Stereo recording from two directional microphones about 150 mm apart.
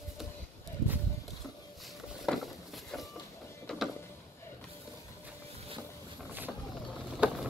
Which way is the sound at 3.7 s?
5° left (ahead or behind).